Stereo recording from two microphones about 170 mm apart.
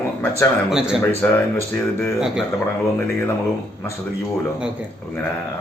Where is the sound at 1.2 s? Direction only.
5° left (ahead or behind).